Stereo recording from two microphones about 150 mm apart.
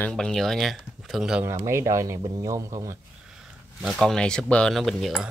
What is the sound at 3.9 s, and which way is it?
Speech, 5° left (ahead or behind).